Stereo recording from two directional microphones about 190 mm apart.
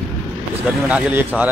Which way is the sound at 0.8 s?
10° right (ahead or behind).